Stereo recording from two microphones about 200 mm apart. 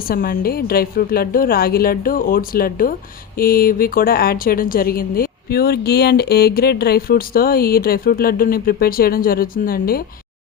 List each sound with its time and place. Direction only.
0.1 s a woman's voice: 45° left (ahead or behind)